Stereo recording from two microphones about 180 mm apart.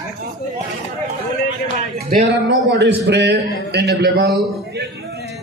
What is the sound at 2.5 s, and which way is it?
A man's voice, 80° right.